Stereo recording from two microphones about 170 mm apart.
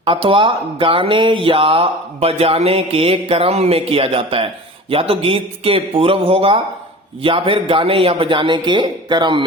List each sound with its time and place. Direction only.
0.0 s speech: 30° right (ahead or behind)